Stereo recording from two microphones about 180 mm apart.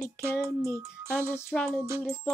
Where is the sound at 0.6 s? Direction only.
5° left (ahead or behind).